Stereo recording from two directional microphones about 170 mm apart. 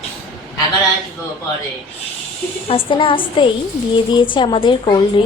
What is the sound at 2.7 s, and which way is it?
A woman's voice, 30° left (ahead or behind).